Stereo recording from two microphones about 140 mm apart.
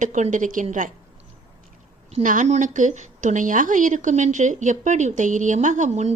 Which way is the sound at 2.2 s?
65° right (ahead or behind).